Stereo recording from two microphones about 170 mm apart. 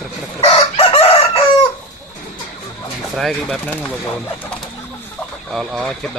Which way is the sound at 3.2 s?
Centre (ahead or behind).